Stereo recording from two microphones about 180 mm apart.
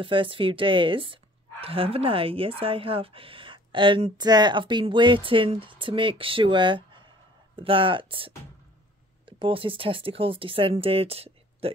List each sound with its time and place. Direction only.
0.0 s speech: 30° right (ahead or behind)